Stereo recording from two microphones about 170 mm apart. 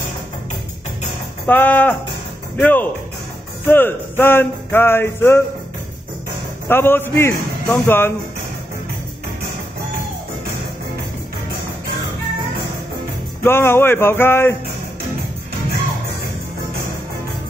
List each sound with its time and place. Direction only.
1.4 s music: 10° left (ahead or behind)
6.7 s music: 15° left (ahead or behind)
13.4 s music: 15° left (ahead or behind)